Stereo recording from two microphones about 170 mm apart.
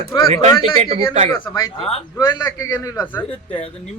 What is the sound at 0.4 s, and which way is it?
Speech, 40° right (ahead or behind).